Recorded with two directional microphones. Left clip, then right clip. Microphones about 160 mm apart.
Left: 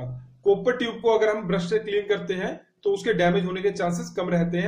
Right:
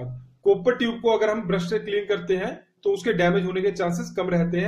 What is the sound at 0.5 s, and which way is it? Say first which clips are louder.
Speech: right 1 dB; 40° right (ahead or behind).